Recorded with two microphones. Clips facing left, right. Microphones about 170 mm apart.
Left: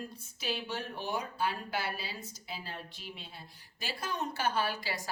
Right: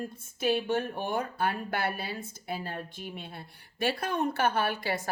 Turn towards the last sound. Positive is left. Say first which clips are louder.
# right 4 dB
turn(degrees=-55)  # may be behind; listen again after turning